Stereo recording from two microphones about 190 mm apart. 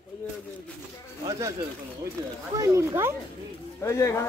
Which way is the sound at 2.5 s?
15° right (ahead or behind).